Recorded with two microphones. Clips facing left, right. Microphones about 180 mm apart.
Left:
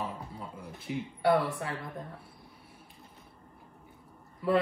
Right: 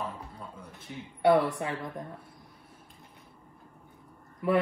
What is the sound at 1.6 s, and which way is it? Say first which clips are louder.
Speech: right 3 dB; 15° right (ahead or behind).